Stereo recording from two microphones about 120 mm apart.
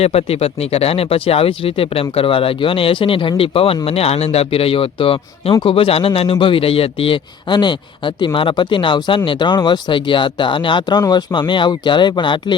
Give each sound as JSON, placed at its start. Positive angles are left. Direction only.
{"t": 0.0, "sound": "speech", "side_deg": 60}